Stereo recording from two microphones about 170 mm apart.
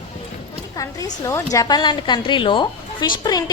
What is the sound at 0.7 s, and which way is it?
A woman's voice, 20° left (ahead or behind).